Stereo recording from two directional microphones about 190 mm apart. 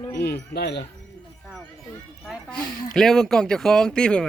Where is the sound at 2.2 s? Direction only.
Centre (ahead or behind).